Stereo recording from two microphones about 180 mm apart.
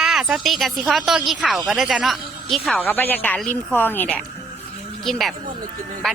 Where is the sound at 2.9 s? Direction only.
10° left (ahead or behind).